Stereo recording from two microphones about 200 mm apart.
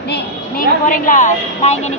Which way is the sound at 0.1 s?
45° left (ahead or behind).